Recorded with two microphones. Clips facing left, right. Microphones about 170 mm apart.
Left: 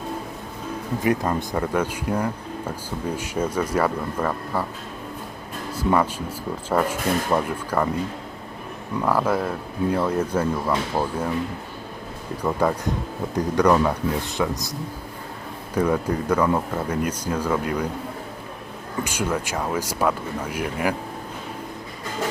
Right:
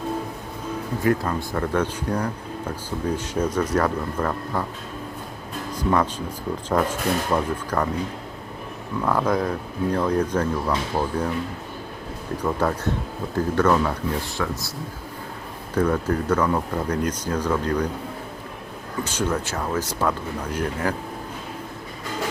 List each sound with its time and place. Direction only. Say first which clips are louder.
1.0 s speech: even; 20° left (ahead or behind)
5.7 s speech: left 1 dB; 5° left (ahead or behind)
9.0 s speech: even; 5° left (ahead or behind)
12.4 s speech: left 2 dB; 10° left (ahead or behind)
15.7 s speech: even; 10° left (ahead or behind)
19.0 s speech: right 1 dB; 10° left (ahead or behind)